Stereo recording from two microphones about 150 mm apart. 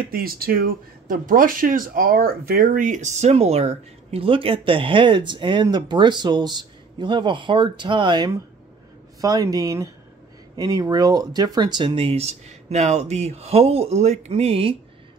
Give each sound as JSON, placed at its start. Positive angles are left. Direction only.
{"t": 0.1, "sound": "speech", "side_deg": -80}